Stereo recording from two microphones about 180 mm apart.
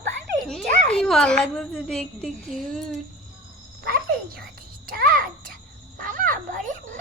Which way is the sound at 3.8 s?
55° right (ahead or behind).